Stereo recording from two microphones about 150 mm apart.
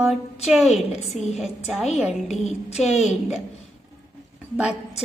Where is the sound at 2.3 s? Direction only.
45° left (ahead or behind).